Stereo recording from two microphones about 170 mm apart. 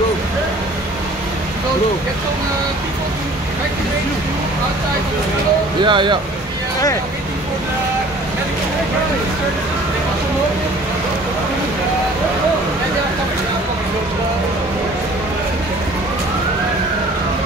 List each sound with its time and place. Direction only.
5.9 s speech: 30° right (ahead or behind)